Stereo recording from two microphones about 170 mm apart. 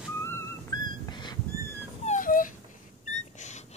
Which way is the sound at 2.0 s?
50° left (ahead or behind).